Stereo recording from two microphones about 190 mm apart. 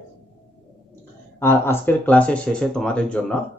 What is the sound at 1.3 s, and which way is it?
Speech, 15° left (ahead or behind).